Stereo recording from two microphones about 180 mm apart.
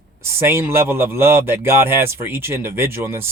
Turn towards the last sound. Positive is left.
turn(degrees=-15)  # may be behind; listen again after turning